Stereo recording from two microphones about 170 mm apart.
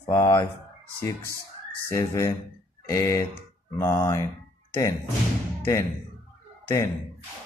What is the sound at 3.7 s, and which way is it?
Speech, 15° left (ahead or behind).